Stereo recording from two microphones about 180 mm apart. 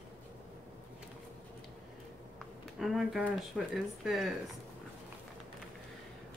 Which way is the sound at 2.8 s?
Centre (ahead or behind).